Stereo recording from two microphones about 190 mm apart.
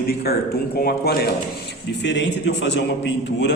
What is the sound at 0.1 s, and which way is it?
Speech, 55° left (ahead or behind).